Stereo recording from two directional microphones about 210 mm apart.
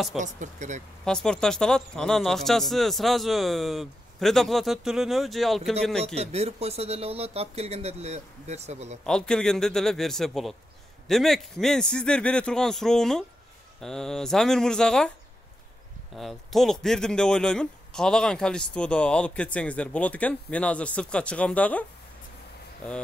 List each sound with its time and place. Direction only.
0.2 s speech: 35° right (ahead or behind)
1.0 s speech: 5° left (ahead or behind)
6.1 s speech: 30° right (ahead or behind)
9.0 s speech: 5° left (ahead or behind)
16.2 s speech: centre (ahead or behind)